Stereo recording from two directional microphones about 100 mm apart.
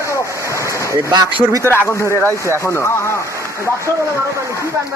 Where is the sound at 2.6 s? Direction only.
25° left (ahead or behind).